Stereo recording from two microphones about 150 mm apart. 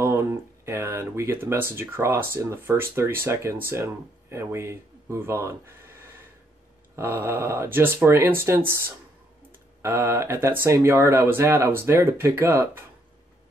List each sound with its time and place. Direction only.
0.0 s speech: 15° right (ahead or behind)